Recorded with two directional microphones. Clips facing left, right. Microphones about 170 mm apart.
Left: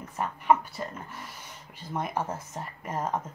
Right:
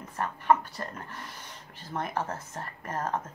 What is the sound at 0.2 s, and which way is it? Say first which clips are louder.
Speech: left 1 dB; 10° left (ahead or behind).